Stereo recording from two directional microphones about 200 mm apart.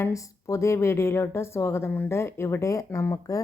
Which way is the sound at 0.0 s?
15° left (ahead or behind).